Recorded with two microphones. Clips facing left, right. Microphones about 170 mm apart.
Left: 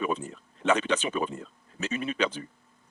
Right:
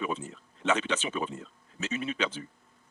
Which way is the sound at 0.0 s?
50° left (ahead or behind).